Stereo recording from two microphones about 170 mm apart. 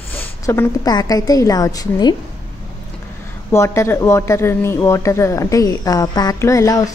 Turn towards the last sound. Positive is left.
turn(degrees=20)  # may be behind; listen again after turning